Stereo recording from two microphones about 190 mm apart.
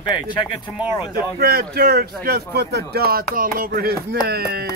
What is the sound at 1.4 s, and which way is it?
Speech, 55° right (ahead or behind).